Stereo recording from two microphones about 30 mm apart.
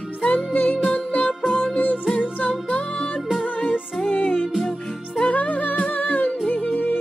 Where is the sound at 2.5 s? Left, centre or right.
Left.